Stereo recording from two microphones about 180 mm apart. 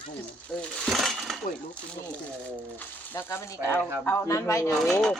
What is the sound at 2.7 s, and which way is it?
Speech, 10° left (ahead or behind).